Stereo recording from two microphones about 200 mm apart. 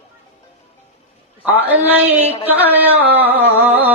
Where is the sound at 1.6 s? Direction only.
10° right (ahead or behind).